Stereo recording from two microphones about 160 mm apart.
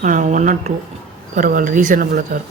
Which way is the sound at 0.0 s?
50° right (ahead or behind).